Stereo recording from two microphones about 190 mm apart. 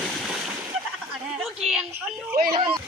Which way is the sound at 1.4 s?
Centre (ahead or behind).